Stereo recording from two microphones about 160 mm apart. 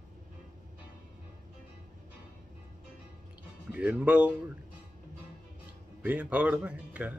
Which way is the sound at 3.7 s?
10° right (ahead or behind).